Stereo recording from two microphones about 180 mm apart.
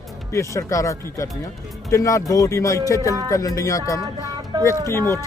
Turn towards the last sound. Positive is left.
turn(degrees=15)  # may be behind; listen again after turning